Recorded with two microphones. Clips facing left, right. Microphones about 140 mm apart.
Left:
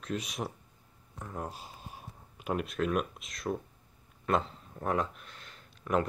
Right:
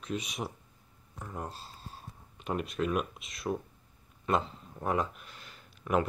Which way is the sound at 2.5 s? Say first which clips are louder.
Left 1 dB; centre (ahead or behind).